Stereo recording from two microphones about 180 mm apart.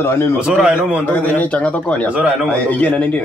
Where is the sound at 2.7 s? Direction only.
10° left (ahead or behind).